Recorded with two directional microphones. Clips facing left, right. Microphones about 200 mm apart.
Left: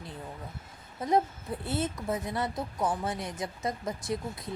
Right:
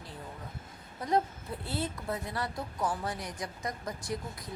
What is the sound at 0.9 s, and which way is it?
Speech, 20° left (ahead or behind).